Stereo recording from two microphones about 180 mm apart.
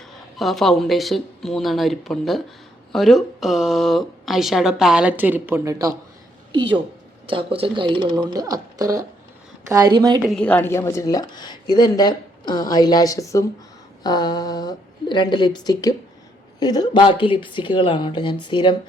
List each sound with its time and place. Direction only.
0.3 s a woman's voice: centre (ahead or behind); by 5.9 s 15° right (ahead or behind)
7.3 s speech: 30° right (ahead or behind)
10.2 s a woman's voice: 5° left (ahead or behind); by 18.8 s 25° left (ahead or behind)